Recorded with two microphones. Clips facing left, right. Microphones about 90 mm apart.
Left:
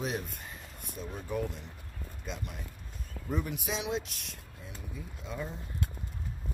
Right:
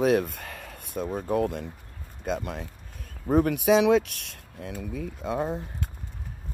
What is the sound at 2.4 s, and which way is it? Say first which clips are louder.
Speech: right 9 dB; 70° right (ahead or behind).